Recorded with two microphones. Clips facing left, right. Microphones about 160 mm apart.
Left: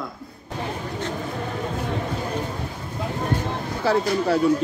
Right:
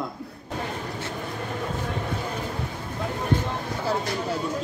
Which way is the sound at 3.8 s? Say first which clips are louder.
Left 7 dB; 80° left.